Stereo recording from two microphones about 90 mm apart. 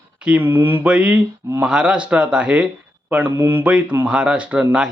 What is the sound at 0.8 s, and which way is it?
Speech, 15° right (ahead or behind).